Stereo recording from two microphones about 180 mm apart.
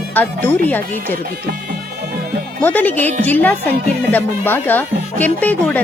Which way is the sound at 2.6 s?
10° left (ahead or behind).